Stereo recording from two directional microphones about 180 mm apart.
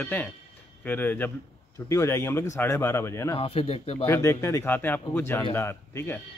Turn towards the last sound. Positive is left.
turn(degrees=15)  # may be behind; listen again after turning